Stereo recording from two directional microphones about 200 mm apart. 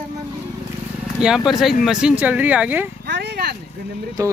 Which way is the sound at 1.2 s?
Centre (ahead or behind).